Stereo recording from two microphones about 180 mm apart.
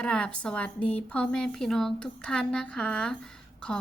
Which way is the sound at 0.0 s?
5° left (ahead or behind).